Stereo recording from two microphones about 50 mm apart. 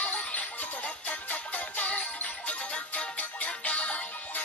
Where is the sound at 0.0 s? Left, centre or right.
Left.